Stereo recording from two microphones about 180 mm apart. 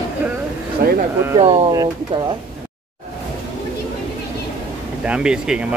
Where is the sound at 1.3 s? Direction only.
30° right (ahead or behind).